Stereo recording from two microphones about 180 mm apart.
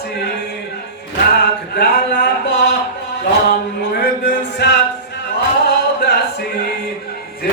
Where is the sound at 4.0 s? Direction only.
70° left (ahead or behind).